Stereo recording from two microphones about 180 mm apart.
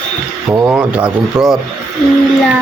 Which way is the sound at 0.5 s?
10° right (ahead or behind).